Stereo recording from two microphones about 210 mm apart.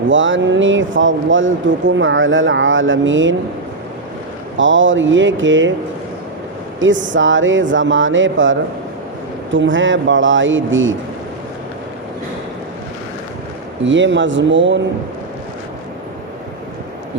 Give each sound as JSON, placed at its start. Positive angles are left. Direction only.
{"t": 0.1, "sound": "speech", "side_deg": -65}
{"t": 4.5, "sound": "speech", "side_deg": -65}
{"t": 6.7, "sound": "speech", "side_deg": -65}
{"t": 13.8, "sound": "speech", "side_deg": -60}